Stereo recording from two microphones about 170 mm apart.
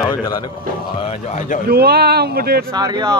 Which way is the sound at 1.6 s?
65° right (ahead or behind).